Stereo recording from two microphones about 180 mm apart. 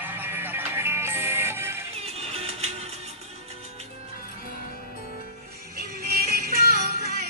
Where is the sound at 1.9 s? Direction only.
35° right (ahead or behind).